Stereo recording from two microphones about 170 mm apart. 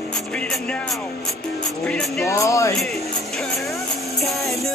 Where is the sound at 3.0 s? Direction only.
Centre (ahead or behind).